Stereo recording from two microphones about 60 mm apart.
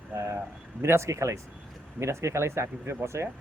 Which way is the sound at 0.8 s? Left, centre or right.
Right.